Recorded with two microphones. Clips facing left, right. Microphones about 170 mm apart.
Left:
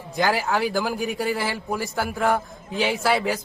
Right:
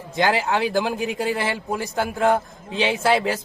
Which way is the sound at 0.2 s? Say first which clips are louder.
Right 2 dB; 20° right (ahead or behind).